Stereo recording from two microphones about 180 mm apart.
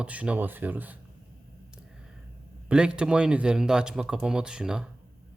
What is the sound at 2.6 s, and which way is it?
Speech, 5° right (ahead or behind).